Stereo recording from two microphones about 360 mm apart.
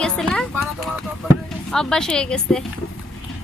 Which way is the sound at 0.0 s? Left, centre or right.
Centre.